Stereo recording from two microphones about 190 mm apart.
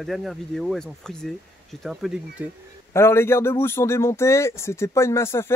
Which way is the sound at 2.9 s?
15° left (ahead or behind).